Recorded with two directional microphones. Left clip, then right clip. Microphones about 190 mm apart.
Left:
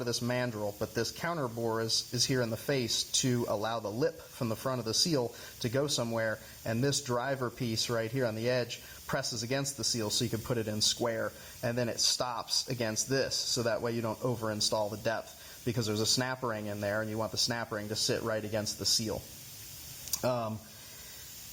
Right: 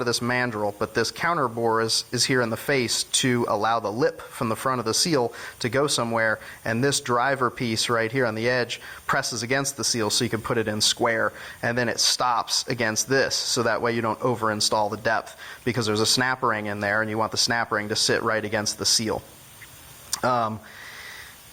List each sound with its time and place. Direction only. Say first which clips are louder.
0.0 s speech: right 9 dB; 15° right (ahead or behind)
14.1 s speech: right 10 dB; 30° right (ahead or behind)
14.3 s speech: right 9 dB; 15° right (ahead or behind)
20.2 s speech: right 10 dB; 15° right (ahead or behind)